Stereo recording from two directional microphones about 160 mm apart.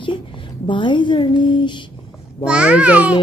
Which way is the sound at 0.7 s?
30° left (ahead or behind).